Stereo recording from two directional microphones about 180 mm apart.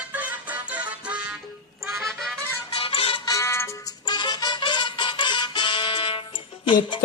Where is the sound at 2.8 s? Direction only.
30° left (ahead or behind).